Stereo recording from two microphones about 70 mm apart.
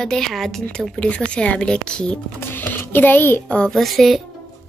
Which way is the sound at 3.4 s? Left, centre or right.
Centre.